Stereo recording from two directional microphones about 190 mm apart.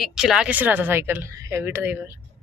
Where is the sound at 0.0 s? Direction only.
Centre (ahead or behind).